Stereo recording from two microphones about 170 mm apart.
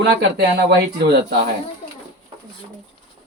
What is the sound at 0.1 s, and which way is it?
Speech, 80° right.